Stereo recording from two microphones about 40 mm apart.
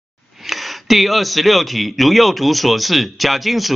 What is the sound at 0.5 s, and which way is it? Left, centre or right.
Speech, centre.